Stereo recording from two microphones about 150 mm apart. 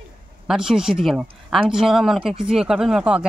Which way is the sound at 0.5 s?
Centre (ahead or behind).